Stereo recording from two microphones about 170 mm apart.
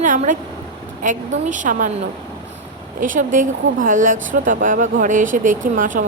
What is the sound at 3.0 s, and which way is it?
A woman's voice, 50° right (ahead or behind).